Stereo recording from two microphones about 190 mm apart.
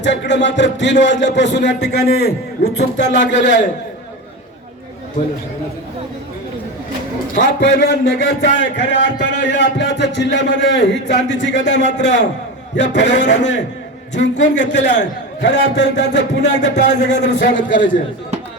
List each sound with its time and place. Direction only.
0.0 s a man's voice: 65° left (ahead or behind)
2.6 s music: 45° left (ahead or behind)
3.0 s a man's voice: 70° left (ahead or behind)
7.3 s a man's voice: 70° left (ahead or behind)
16.4 s a man's voice: 40° left (ahead or behind)
17.7 s a man's voice: 75° left (ahead or behind)